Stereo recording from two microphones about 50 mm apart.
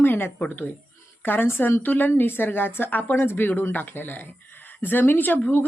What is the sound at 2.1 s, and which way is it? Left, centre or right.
A woman's voice, left.